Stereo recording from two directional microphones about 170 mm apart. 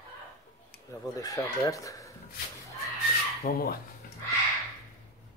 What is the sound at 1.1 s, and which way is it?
Speech, 20° left (ahead or behind).